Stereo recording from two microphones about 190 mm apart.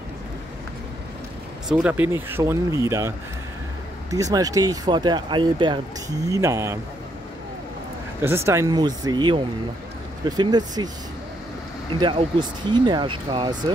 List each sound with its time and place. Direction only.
1.7 s speech: 5° right (ahead or behind)
8.2 s speech: 15° right (ahead or behind)
12.0 s speech: 25° right (ahead or behind)